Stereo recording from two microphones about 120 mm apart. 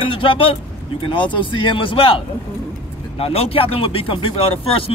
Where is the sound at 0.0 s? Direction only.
45° left (ahead or behind).